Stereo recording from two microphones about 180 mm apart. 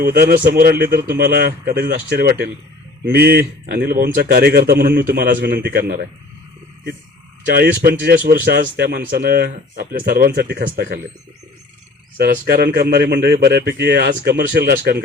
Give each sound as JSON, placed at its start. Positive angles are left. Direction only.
{"t": 0.1, "sound": "a man's voice", "side_deg": -55}
{"t": 7.4, "sound": "a man's voice", "side_deg": -60}
{"t": 12.1, "sound": "a man's voice", "side_deg": -55}